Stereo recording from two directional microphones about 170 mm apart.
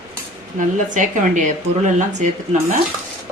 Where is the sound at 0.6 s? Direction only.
50° right (ahead or behind).